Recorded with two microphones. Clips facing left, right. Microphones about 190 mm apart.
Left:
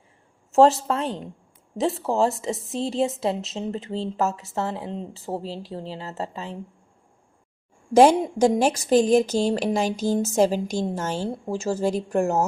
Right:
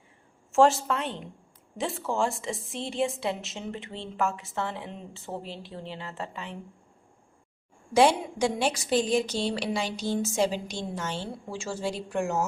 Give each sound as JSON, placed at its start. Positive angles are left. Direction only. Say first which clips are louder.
{"t": 0.5, "sound": "a woman's voice", "louder": "left 4 dB", "side_deg": 35}
{"t": 7.9, "sound": "a woman's voice", "louder": "left 6 dB", "side_deg": 45}